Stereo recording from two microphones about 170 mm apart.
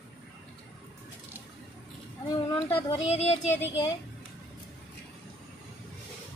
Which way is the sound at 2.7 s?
40° left (ahead or behind).